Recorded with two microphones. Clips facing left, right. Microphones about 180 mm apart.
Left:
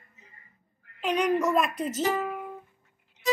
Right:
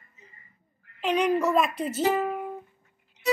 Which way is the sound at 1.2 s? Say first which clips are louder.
Right 1 dB; 5° right (ahead or behind).